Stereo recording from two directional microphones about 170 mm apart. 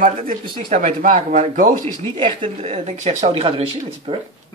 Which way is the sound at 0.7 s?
45° right (ahead or behind).